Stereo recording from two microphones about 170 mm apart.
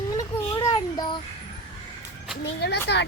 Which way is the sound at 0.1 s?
20° left (ahead or behind).